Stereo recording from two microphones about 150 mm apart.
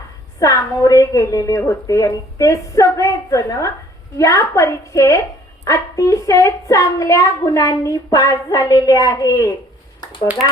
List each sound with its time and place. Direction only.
0.3 s speech: 25° left (ahead or behind)